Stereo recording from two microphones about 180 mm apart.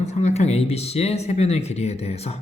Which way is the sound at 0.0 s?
40° left (ahead or behind).